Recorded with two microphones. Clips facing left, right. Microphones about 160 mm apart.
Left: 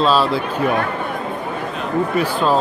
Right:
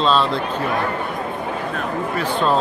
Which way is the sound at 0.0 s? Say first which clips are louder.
Left 2 dB; 5° left (ahead or behind).